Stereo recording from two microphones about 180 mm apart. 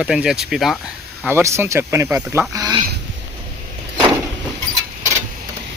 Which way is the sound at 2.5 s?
20° right (ahead or behind).